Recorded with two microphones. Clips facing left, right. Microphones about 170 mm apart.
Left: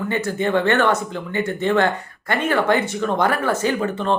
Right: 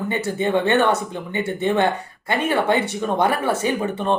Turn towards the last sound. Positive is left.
turn(degrees=-15)  # may be behind; listen again after turning